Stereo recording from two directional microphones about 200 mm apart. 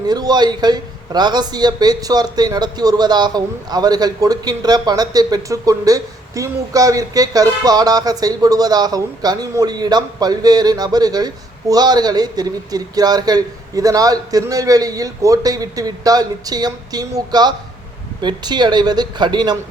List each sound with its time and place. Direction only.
0.1 s a man's voice: 20° right (ahead or behind)